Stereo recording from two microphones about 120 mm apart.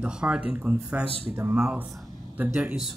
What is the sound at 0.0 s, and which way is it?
Speech, 5° right (ahead or behind).